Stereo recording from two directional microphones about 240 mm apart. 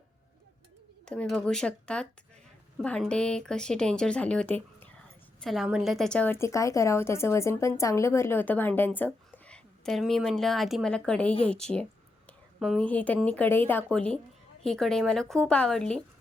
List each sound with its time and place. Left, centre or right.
1.0 s a woman's voice: centre